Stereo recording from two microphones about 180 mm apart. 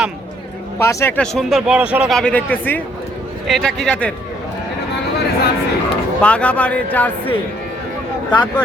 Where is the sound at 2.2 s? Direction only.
5° left (ahead or behind).